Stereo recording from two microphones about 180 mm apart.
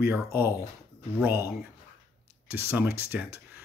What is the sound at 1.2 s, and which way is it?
Speech, 15° right (ahead or behind).